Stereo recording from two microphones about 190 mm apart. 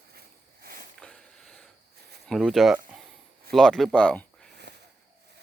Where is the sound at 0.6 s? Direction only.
50° right (ahead or behind).